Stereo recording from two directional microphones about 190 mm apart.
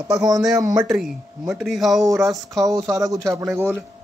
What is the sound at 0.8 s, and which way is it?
Speech, centre (ahead or behind).